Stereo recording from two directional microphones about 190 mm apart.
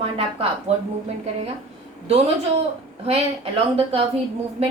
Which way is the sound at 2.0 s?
35° right (ahead or behind).